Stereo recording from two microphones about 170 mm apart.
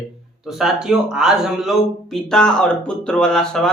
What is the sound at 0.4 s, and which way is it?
Speech, centre (ahead or behind).